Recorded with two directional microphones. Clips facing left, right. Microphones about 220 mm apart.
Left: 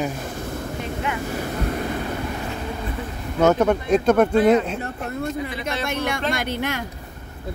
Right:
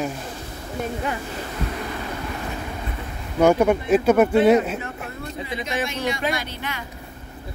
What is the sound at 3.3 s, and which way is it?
Speech, 10° right (ahead or behind).